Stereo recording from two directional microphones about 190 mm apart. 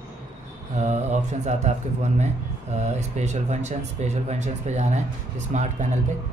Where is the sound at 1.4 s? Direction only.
35° right (ahead or behind).